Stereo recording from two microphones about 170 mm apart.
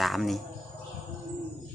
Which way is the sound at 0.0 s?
Centre (ahead or behind).